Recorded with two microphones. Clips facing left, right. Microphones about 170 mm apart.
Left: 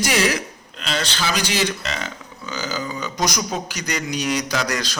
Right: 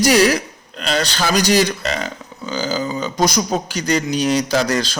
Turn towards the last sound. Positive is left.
turn(degrees=-30)  # may be behind; listen again after turning